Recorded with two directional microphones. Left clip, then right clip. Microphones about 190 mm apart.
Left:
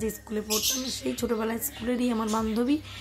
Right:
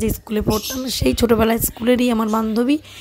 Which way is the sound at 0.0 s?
45° right (ahead or behind).